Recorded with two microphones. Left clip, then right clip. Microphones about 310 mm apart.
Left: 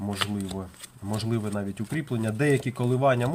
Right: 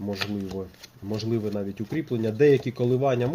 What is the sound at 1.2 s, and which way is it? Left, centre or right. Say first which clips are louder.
Speech: right 3 dB; left.